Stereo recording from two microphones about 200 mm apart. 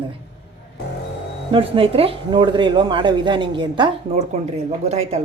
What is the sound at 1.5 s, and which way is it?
A woman's voice, 25° right (ahead or behind).